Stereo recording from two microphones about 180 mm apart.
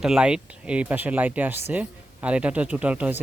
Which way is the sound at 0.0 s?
5° right (ahead or behind).